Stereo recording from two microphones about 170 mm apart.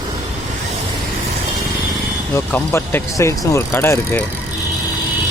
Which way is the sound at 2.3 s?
15° left (ahead or behind).